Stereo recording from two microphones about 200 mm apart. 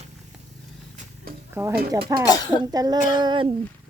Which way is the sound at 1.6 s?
15° right (ahead or behind).